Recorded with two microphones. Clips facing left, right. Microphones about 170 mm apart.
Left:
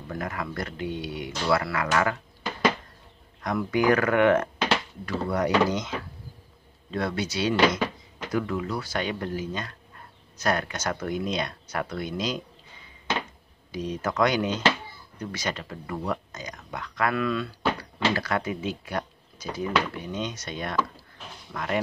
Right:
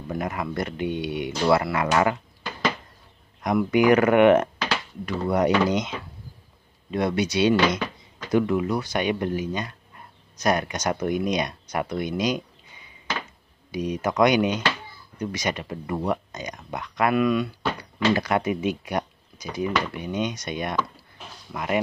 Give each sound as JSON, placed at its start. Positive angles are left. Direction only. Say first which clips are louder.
{"t": 0.1, "sound": "speech", "louder": "right 4 dB", "side_deg": -20}
{"t": 3.4, "sound": "speech", "louder": "right 4 dB", "side_deg": -15}